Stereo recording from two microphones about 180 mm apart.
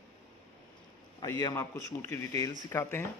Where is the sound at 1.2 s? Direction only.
20° left (ahead or behind).